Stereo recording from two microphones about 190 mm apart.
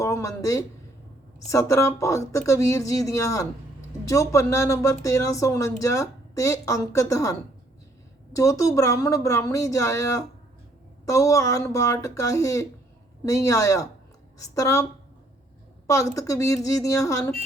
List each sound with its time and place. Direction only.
0.0 s speech: 15° left (ahead or behind)
15.9 s speech: 15° left (ahead or behind)